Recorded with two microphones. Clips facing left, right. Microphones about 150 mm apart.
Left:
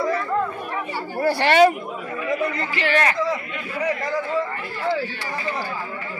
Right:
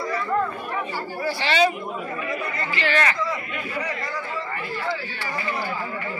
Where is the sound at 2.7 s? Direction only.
50° left (ahead or behind).